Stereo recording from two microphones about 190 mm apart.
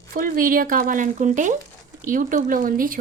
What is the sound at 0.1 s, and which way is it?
Speech, 45° right (ahead or behind).